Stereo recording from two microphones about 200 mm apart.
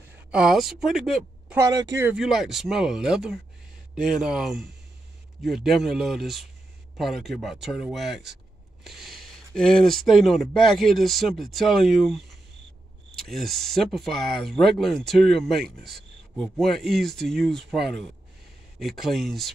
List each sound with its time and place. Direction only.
0.3 s speech: 5° right (ahead or behind)
1.6 s speech: 20° right (ahead or behind)
2.0 s speech: 5° right (ahead or behind)